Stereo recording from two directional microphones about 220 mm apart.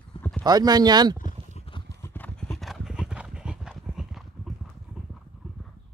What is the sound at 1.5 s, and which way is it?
Clip-clop, 25° left (ahead or behind).